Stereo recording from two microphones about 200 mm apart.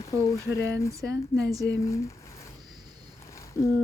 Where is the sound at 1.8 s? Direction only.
15° left (ahead or behind).